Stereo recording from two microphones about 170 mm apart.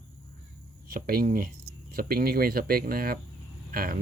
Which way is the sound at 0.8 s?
60° right (ahead or behind).